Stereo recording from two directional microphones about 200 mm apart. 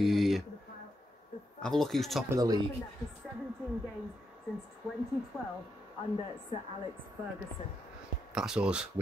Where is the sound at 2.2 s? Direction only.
20° right (ahead or behind).